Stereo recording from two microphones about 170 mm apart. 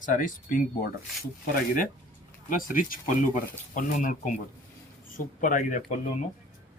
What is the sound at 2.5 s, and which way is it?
Speech, 50° left (ahead or behind).